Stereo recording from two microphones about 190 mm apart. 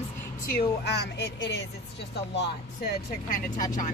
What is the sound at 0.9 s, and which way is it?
Speech, 60° left (ahead or behind).